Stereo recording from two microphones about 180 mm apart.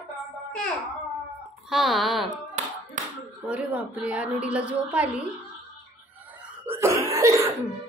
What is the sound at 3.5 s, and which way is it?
A woman's voice, 5° right (ahead or behind).